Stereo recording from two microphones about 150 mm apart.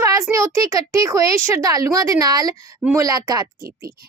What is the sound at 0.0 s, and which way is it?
A woman's voice, 20° right (ahead or behind).